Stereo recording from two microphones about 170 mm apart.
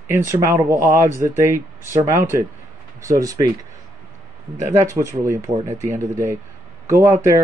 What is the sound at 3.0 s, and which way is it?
Speech, 20° right (ahead or behind).